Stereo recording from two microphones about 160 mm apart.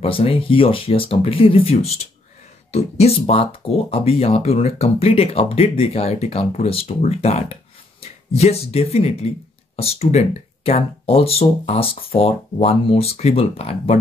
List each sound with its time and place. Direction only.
0.0 s speech: 35° left (ahead or behind)